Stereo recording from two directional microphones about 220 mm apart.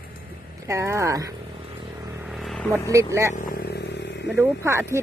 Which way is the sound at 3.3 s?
40° left (ahead or behind).